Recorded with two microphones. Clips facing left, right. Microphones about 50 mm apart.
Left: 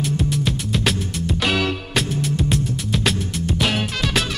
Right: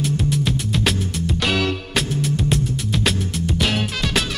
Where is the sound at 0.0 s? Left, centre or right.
Centre.